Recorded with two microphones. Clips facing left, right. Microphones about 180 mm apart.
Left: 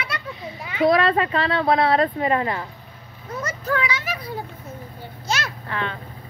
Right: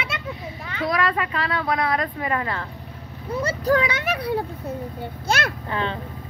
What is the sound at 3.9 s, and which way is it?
Speech, 65° right (ahead or behind).